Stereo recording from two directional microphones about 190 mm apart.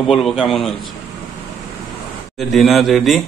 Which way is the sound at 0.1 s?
Centre (ahead or behind).